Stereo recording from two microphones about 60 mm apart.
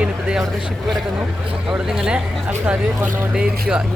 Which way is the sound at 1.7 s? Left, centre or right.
Centre.